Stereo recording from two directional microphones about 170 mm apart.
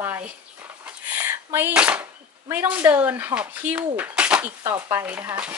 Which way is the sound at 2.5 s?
10° right (ahead or behind).